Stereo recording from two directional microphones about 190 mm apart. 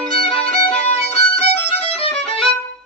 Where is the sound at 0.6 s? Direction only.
35° left (ahead or behind).